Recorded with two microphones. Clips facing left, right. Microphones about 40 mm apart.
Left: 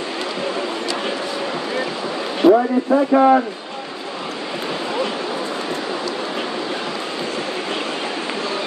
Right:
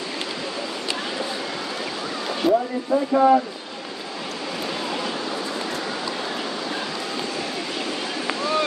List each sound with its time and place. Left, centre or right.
2.5 s speech: left